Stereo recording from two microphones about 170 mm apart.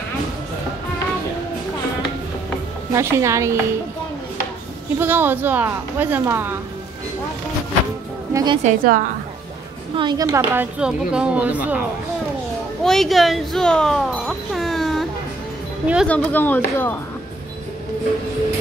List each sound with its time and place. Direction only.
2.9 s speech: 15° right (ahead or behind)
4.9 s speech: 10° right (ahead or behind)
8.3 s music: 20° right (ahead or behind)
8.6 s a woman's voice: 55° right (ahead or behind)
9.9 s speech: 25° right (ahead or behind)
12.8 s speech: centre (ahead or behind)
16.1 s speech: 10° left (ahead or behind)